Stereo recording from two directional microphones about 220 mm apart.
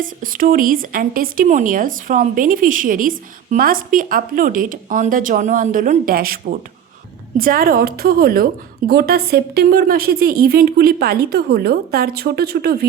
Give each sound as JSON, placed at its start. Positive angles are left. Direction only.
{"t": 0.0, "sound": "a woman's voice", "side_deg": -40}